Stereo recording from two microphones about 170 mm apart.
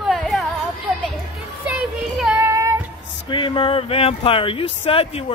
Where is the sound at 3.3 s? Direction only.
30° left (ahead or behind).